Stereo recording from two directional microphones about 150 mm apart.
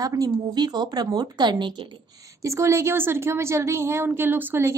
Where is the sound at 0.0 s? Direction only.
25° right (ahead or behind).